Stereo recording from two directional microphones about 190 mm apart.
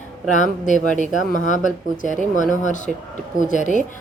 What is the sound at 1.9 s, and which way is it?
Speech, 40° left (ahead or behind).